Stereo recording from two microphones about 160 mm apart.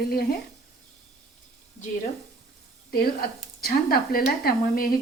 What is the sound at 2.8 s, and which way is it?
Speech, 75° left (ahead or behind).